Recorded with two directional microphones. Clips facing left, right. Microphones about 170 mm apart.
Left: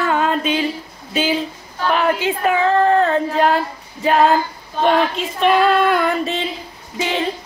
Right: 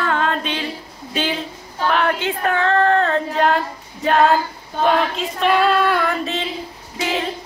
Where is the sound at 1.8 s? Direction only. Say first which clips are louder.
Left 2 dB; 5° left (ahead or behind).